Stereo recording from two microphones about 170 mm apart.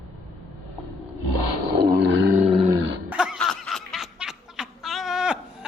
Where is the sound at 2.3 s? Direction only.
40° right (ahead or behind).